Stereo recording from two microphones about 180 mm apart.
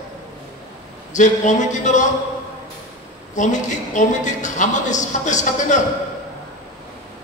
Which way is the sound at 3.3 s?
40° left (ahead or behind).